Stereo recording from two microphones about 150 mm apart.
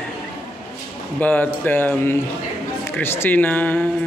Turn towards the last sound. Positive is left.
turn(degrees=10)  # may be behind; listen again after turning